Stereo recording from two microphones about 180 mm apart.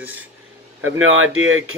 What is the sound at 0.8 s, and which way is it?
Speech, 90° right.